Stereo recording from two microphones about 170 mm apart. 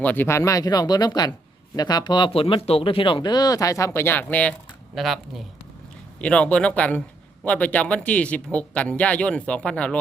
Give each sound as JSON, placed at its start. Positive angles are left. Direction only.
{"t": 0.0, "sound": "speech", "side_deg": 10}